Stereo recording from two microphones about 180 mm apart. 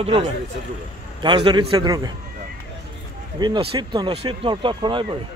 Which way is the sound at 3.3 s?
25° right (ahead or behind).